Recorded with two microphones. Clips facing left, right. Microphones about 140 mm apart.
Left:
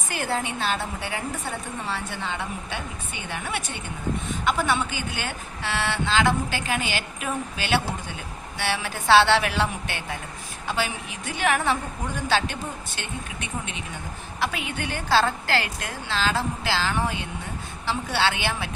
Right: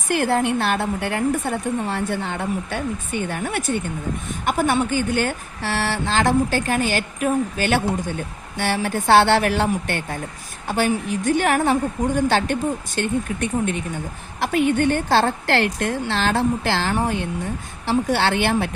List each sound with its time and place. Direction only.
0.1 s speech: 55° right (ahead or behind)